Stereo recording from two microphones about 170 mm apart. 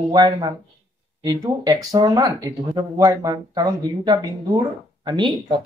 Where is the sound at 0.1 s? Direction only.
25° right (ahead or behind).